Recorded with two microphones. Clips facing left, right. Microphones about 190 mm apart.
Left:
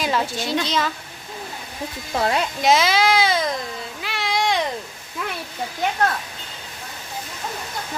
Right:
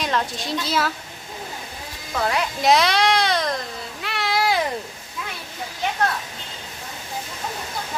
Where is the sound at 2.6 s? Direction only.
Centre (ahead or behind).